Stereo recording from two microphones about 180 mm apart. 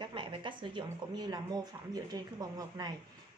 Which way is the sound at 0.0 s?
25° right (ahead or behind).